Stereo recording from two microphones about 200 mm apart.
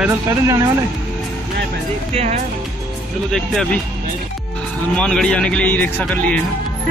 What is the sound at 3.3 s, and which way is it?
Speech, centre (ahead or behind).